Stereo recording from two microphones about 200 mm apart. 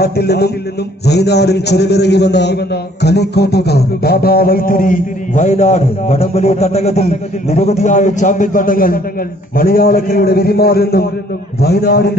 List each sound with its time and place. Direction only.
0.0 s a man's voice: 55° left (ahead or behind)